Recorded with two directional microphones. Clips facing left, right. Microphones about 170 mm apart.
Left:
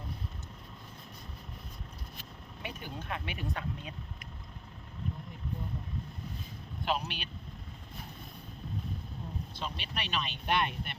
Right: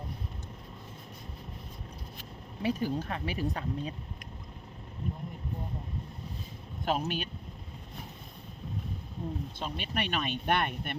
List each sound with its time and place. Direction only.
2.6 s speech: 35° right (ahead or behind)
6.8 s speech: 45° right (ahead or behind)
9.6 s speech: 50° right (ahead or behind)